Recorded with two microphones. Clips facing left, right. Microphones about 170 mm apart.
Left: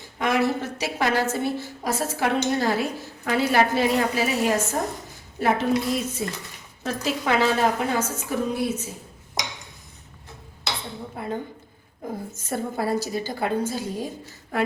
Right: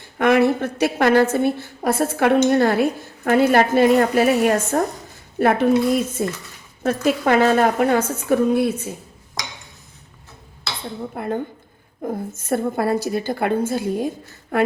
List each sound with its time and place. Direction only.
0.2 s a woman's voice: 60° right (ahead or behind)
11.1 s a woman's voice: 55° right (ahead or behind)